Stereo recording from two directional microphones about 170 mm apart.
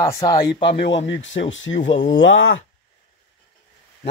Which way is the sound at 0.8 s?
90° left.